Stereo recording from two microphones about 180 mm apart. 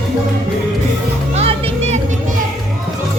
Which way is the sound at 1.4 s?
35° right (ahead or behind).